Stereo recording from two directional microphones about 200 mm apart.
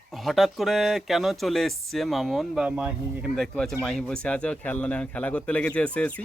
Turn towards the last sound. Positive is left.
turn(degrees=5)  # may be behind; listen again after turning